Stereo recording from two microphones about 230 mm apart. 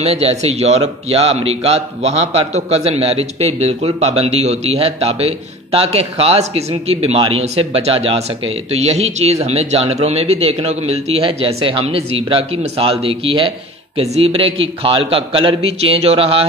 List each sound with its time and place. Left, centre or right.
0.0 s speech: right